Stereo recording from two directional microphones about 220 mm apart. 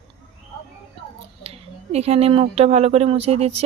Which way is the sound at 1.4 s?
30° right (ahead or behind).